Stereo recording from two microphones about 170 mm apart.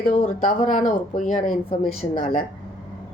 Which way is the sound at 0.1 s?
50° left (ahead or behind).